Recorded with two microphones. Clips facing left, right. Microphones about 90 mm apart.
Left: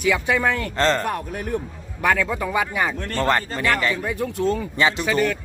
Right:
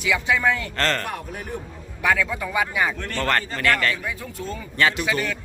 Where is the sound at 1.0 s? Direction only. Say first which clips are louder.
Left 5 dB; 45° left (ahead or behind).